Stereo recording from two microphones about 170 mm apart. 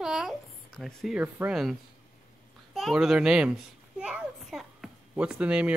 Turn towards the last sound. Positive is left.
turn(degrees=-5)  # may be behind; listen again after turning